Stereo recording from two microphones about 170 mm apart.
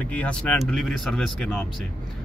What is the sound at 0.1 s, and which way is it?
Speech, 10° left (ahead or behind).